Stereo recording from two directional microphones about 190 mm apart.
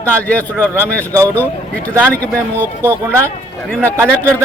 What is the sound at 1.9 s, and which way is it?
A man's voice, 10° right (ahead or behind).